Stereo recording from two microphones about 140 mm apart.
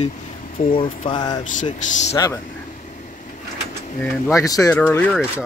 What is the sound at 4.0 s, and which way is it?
Speech, 20° left (ahead or behind).